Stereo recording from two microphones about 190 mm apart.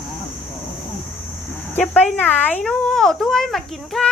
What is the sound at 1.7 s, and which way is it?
A child's voice, 10° left (ahead or behind).